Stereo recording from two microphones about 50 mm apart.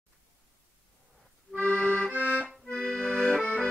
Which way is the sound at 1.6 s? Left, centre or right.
Left.